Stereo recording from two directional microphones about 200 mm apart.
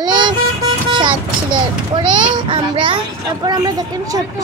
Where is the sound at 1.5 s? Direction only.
25° right (ahead or behind).